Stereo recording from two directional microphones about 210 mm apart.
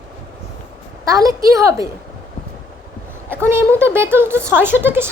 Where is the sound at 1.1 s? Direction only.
15° right (ahead or behind).